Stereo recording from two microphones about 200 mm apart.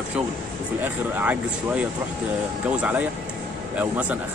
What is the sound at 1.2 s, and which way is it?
Speech, 10° right (ahead or behind).